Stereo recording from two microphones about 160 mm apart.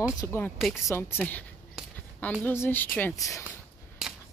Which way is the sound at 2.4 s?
15° left (ahead or behind).